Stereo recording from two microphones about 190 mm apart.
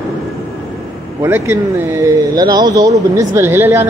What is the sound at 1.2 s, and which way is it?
Speech, 15° right (ahead or behind).